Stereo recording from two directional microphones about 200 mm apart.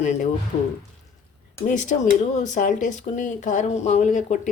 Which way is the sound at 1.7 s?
40° left (ahead or behind).